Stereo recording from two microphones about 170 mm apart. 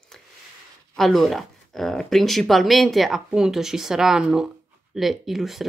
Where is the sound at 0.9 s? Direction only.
Centre (ahead or behind).